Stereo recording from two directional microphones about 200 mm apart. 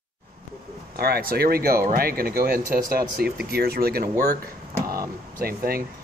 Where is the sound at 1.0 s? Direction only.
50° right (ahead or behind).